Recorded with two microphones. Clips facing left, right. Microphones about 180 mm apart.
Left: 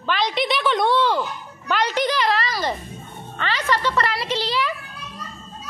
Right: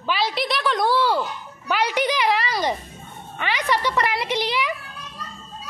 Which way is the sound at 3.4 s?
15° right (ahead or behind).